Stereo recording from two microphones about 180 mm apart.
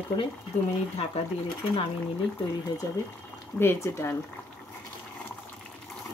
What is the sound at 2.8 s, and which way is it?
Speech, 15° left (ahead or behind).